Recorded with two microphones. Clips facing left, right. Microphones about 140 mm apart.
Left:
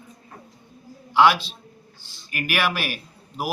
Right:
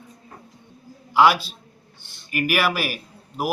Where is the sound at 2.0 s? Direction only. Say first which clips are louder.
Even; 60° right (ahead or behind).